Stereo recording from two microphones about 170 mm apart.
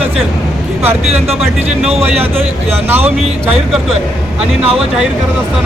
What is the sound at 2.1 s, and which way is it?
Speech, 35° right (ahead or behind).